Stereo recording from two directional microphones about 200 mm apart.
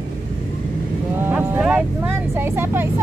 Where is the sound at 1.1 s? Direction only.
10° right (ahead or behind).